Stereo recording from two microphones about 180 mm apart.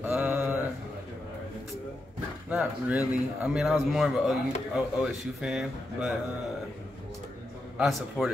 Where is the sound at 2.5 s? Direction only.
5° right (ahead or behind).